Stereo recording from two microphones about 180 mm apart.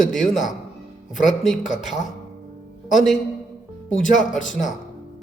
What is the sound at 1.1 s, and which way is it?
Speech, 45° left (ahead or behind).